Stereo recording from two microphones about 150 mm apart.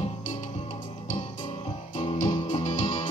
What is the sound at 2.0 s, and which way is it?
Music, 45° left (ahead or behind).